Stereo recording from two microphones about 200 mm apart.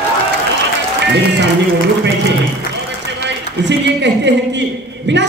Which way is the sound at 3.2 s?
60° right (ahead or behind).